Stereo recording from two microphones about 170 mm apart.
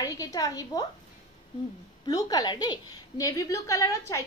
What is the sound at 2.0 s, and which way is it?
A woman's voice, 20° left (ahead or behind).